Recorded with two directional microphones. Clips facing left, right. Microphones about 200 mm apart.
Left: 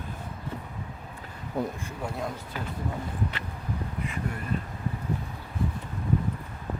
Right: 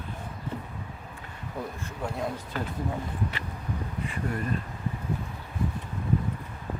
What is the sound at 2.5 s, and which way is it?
Speech, 10° left (ahead or behind).